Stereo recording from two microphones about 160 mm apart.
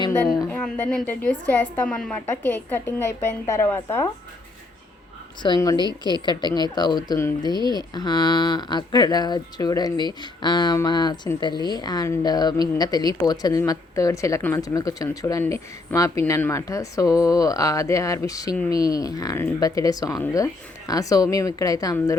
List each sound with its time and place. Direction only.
0.5 s a woman's voice: 5° left (ahead or behind)
5.4 s speech: 25° left (ahead or behind)